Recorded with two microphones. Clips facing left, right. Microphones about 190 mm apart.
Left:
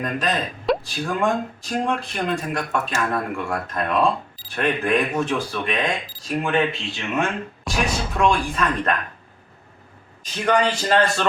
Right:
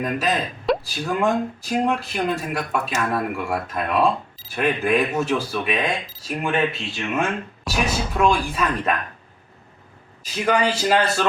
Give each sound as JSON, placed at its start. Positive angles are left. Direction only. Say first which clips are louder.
{"t": 0.0, "sound": "speech", "louder": "right 1 dB", "side_deg": -5}
{"t": 10.3, "sound": "a man's voice", "louder": "even", "side_deg": -5}